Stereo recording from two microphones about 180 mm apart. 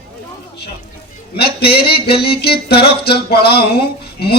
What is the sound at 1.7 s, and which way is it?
Speech, 60° left (ahead or behind).